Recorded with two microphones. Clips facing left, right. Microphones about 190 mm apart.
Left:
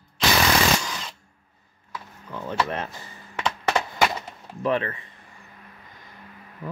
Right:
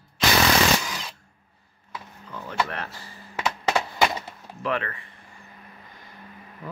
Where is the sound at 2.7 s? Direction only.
20° left (ahead or behind).